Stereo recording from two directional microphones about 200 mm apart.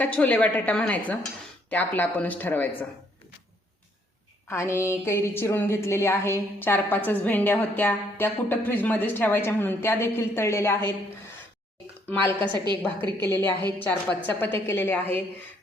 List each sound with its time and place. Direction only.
0.0 s a woman's voice: 5° left (ahead or behind)
4.4 s a woman's voice: 15° left (ahead or behind)
12.4 s a woman's voice: 25° right (ahead or behind)
13.2 s a woman's voice: 10° left (ahead or behind)